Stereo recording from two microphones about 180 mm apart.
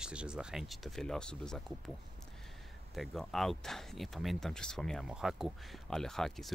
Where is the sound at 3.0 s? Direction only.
Centre (ahead or behind).